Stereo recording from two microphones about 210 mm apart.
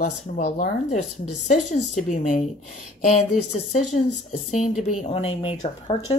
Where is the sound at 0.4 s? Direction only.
35° left (ahead or behind).